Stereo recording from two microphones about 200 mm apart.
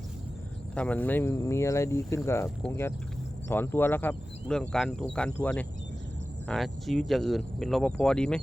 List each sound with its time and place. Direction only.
0.8 s speech: 10° left (ahead or behind)